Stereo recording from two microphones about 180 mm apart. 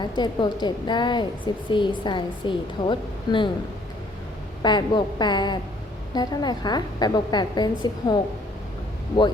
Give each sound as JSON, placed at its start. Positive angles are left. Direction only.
{"t": 0.0, "sound": "a woman's voice", "side_deg": 25}
{"t": 4.6, "sound": "a woman's voice", "side_deg": 25}